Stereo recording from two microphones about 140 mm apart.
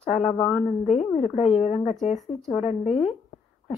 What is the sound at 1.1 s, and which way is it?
Speech, 50° left (ahead or behind).